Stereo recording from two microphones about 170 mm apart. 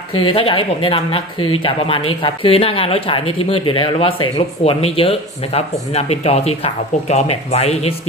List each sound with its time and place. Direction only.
0.1 s speech: 30° left (ahead or behind)